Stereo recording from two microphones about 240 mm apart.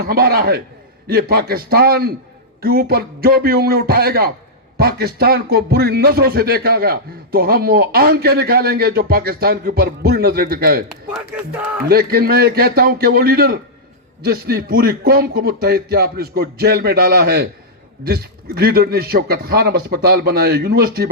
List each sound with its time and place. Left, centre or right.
0.0 s speech: right
10.8 s speech: centre
11.9 s speech: right